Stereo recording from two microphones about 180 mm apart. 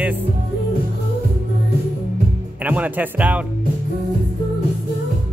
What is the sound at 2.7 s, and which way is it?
Speech, 10° right (ahead or behind).